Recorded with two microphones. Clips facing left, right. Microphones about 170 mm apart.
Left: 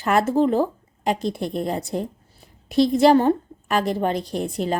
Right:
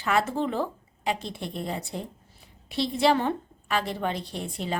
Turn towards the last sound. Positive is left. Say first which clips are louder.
# left 8 dB
turn(degrees=45)  # may be behind; listen again after turning